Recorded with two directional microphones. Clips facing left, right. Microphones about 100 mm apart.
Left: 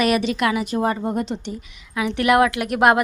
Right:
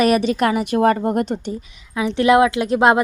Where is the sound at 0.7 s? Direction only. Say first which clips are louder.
Right 5 dB; 65° right (ahead or behind).